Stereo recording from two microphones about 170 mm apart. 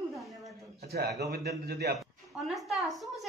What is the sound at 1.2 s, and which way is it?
Speech, 70° right (ahead or behind).